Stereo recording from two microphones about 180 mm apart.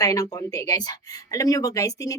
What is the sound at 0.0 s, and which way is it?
A woman's voice, 20° left (ahead or behind).